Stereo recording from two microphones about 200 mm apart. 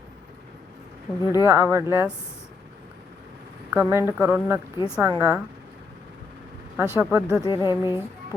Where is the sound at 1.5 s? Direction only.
10° right (ahead or behind).